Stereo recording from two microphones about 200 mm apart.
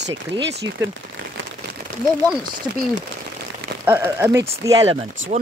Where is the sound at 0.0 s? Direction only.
60° right (ahead or behind).